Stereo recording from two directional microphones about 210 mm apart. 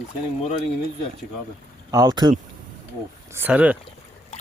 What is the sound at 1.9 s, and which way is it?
Speech, 15° right (ahead or behind).